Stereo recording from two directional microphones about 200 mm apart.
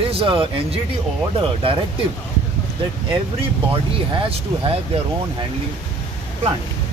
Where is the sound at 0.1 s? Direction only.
25° right (ahead or behind).